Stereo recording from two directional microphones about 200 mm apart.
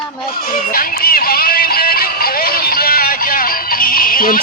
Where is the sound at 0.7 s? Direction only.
45° left (ahead or behind).